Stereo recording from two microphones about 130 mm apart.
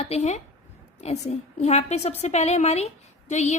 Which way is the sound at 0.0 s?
55° left (ahead or behind).